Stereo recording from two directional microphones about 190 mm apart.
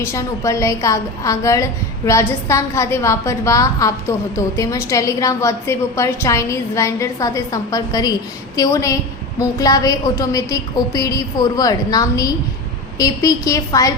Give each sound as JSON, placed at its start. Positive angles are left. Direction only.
{"t": 0.0, "sound": "a woman's voice", "side_deg": 15}